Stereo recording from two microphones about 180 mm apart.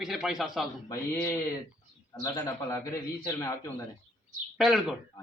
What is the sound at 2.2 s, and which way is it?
A man's voice, 20° left (ahead or behind).